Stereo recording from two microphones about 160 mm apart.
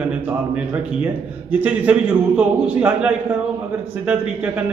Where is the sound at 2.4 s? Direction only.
10° right (ahead or behind).